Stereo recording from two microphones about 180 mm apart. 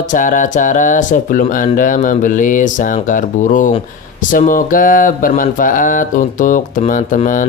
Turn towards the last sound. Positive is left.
turn(degrees=45)  # may be behind; listen again after turning